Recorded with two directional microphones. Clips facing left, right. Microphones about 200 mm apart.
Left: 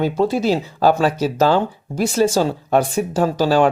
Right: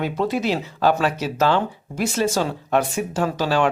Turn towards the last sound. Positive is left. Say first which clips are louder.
# left 5 dB
turn(degrees=35)  # may be behind; listen again after turning